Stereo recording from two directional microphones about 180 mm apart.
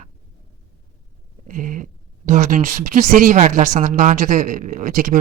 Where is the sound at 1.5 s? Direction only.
45° right (ahead or behind).